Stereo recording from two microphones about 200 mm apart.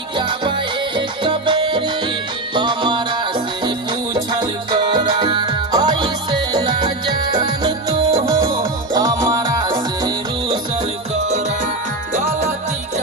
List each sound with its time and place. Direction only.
0.2 s music: 25° right (ahead or behind)
11.1 s music: 35° right (ahead or behind)